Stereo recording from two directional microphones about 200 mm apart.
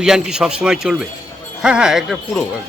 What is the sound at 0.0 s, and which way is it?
Speech, 5° right (ahead or behind).